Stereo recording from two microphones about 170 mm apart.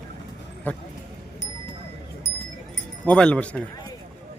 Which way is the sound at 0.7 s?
10° left (ahead or behind).